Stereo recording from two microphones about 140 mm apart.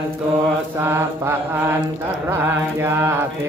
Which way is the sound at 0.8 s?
15° right (ahead or behind).